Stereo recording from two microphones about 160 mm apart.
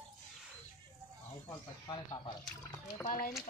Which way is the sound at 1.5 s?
25° left (ahead or behind).